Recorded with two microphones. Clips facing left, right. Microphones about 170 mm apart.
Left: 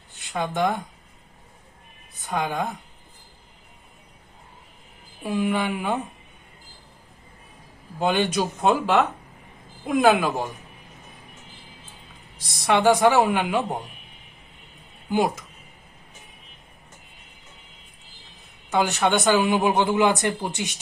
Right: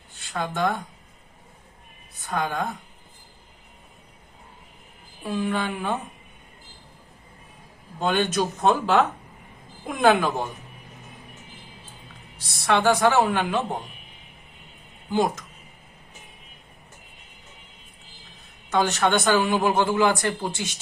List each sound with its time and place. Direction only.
0.3 s a man's voice: 15° left (ahead or behind)
2.2 s a man's voice: 15° left (ahead or behind)
5.2 s a man's voice: 10° left (ahead or behind)
7.9 s a man's voice: 10° left (ahead or behind)
12.5 s a man's voice: 15° left (ahead or behind)
15.1 s a man's voice: 10° left (ahead or behind)
18.7 s a man's voice: 10° left (ahead or behind)